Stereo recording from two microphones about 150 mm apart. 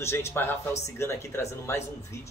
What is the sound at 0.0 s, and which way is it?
Speech, 15° left (ahead or behind).